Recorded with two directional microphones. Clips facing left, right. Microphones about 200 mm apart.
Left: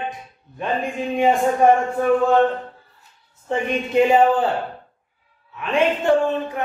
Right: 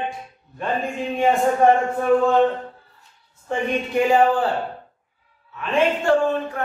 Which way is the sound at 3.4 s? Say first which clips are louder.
Left 1 dB; 20° left (ahead or behind).